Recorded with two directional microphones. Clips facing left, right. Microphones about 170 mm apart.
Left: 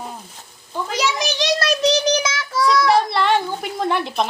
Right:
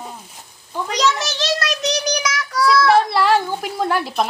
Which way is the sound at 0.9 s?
5° left (ahead or behind).